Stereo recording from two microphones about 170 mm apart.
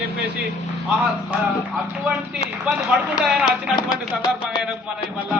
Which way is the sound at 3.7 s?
25° left (ahead or behind).